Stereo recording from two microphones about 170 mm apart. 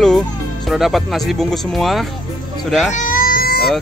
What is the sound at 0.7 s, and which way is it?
Speech, centre (ahead or behind).